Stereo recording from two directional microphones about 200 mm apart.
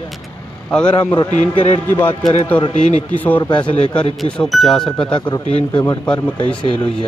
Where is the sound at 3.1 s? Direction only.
10° left (ahead or behind).